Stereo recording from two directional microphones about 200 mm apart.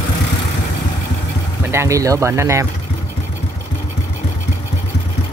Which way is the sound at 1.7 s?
15° right (ahead or behind).